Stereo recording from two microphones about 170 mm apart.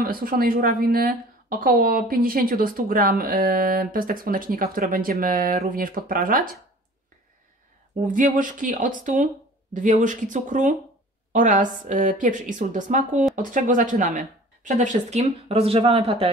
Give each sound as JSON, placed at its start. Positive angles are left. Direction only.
{"t": 0.0, "sound": "a woman's voice", "side_deg": -60}
{"t": 8.1, "sound": "speech", "side_deg": -50}